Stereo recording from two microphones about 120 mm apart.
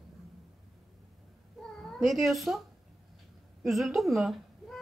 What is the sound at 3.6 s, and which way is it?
A woman's voice, centre (ahead or behind).